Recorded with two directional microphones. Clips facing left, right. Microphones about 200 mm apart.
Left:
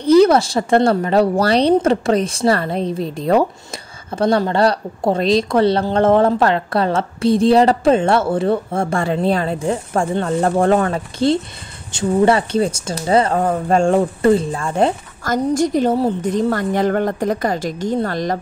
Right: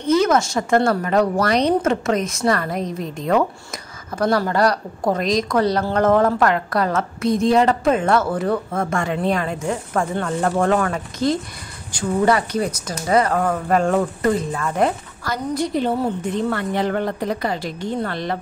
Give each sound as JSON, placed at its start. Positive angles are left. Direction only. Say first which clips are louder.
{"t": 0.0, "sound": "speech", "louder": "left 6 dB", "side_deg": 35}
{"t": 15.2, "sound": "a woman's voice", "louder": "left 6 dB", "side_deg": 45}